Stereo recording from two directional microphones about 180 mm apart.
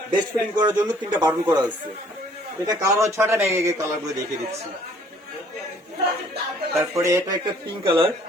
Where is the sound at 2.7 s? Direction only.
15° right (ahead or behind).